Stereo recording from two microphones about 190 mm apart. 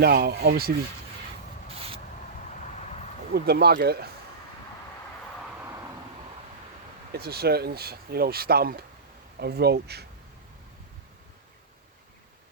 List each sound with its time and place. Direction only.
0.0 s speech: 55° right (ahead or behind)
2.6 s a sound: 35° left (ahead or behind)
3.3 s speech: 55° right (ahead or behind)
7.1 s speech: 55° right (ahead or behind)